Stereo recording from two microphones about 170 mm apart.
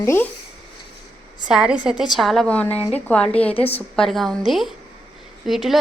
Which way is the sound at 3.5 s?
35° left (ahead or behind).